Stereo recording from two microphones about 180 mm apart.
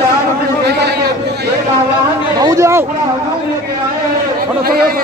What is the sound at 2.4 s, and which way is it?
Speech, 15° right (ahead or behind).